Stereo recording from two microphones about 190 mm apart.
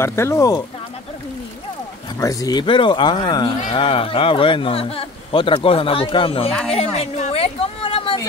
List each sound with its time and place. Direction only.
0.0 s speech: 15° left (ahead or behind)
2.1 s speech: 20° left (ahead or behind)
6.7 s a sound: 30° left (ahead or behind)